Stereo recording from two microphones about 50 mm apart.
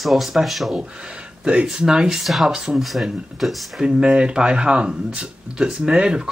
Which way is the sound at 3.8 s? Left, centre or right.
Centre.